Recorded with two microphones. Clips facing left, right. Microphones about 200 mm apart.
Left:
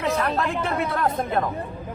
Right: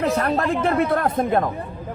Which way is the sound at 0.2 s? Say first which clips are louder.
Right 4 dB; 50° right (ahead or behind).